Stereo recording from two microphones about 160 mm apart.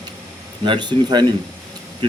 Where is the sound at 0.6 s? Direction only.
30° right (ahead or behind).